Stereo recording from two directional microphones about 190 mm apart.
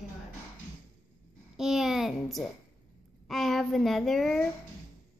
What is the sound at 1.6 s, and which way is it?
A woman's voice, centre (ahead or behind).